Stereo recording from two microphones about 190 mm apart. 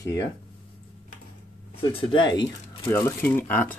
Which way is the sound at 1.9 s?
25° left (ahead or behind).